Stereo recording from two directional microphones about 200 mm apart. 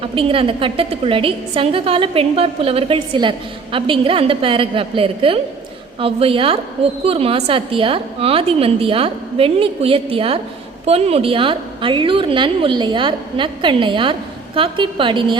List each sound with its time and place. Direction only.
0.0 s a woman's voice: 25° right (ahead or behind)